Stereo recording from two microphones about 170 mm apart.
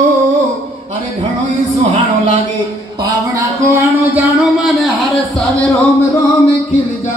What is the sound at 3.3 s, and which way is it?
Speech, 20° right (ahead or behind).